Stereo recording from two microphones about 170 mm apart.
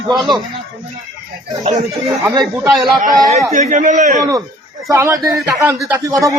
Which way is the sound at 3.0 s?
50° right (ahead or behind).